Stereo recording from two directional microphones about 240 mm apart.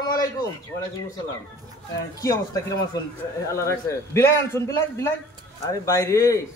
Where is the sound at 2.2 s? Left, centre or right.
Centre.